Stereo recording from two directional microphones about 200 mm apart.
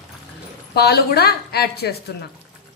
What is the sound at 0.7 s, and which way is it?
A woman's voice, 50° left (ahead or behind).